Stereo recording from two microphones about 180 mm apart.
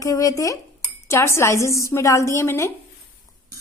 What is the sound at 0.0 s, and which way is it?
A woman's voice, 20° left (ahead or behind).